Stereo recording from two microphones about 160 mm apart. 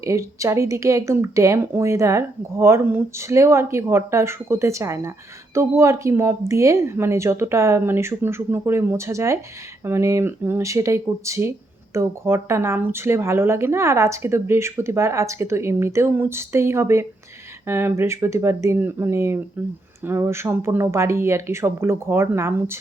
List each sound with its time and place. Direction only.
0.0 s speech: 20° right (ahead or behind)